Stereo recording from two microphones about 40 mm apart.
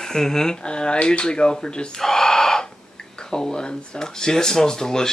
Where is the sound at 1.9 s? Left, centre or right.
Centre.